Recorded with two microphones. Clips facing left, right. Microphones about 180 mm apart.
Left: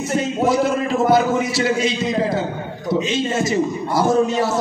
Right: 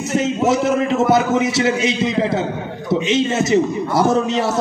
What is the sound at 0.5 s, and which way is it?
A man's voice, 25° right (ahead or behind).